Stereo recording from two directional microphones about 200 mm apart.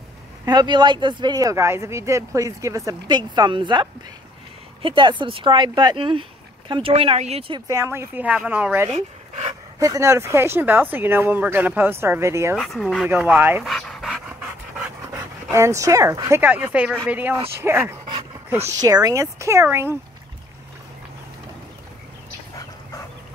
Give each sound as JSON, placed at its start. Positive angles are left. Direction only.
{"t": 0.5, "sound": "speech", "side_deg": -20}
{"t": 8.9, "sound": "speech", "side_deg": -30}
{"t": 9.8, "sound": "speech", "side_deg": -15}
{"t": 12.5, "sound": "speech", "side_deg": 0}
{"t": 13.7, "sound": "dog", "side_deg": 0}
{"t": 15.5, "sound": "speech", "side_deg": -15}